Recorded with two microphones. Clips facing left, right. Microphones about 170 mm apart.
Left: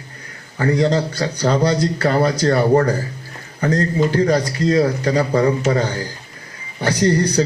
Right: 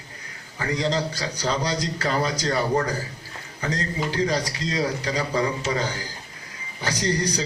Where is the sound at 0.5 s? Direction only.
45° left (ahead or behind).